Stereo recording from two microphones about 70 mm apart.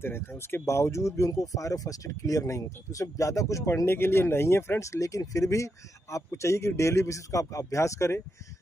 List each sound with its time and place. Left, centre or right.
0.0 s speech: left
3.8 s speech: left